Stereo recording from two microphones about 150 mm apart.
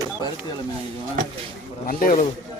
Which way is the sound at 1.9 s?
65° left (ahead or behind).